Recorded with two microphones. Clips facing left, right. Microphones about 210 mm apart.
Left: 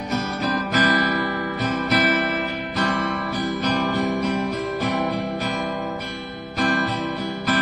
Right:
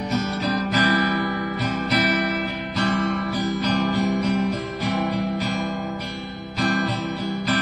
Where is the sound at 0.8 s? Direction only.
55° left (ahead or behind).